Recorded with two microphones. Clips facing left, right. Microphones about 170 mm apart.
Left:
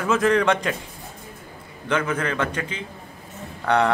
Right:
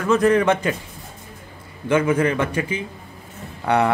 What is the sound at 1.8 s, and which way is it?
A man's voice, 10° right (ahead or behind).